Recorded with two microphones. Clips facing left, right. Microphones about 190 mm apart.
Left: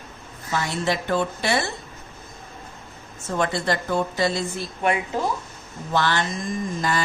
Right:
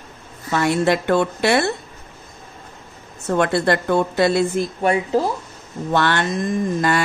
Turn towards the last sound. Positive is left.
turn(degrees=-60)  # may be behind; listen again after turning